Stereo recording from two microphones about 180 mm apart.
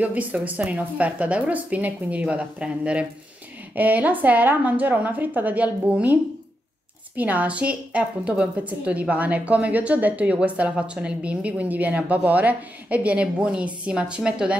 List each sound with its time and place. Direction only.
0.0 s a woman's voice: 10° right (ahead or behind)
7.2 s a woman's voice: 10° right (ahead or behind)